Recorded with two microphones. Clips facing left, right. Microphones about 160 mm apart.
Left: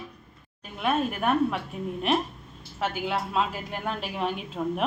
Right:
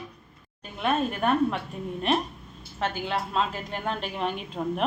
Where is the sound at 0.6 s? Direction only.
5° left (ahead or behind).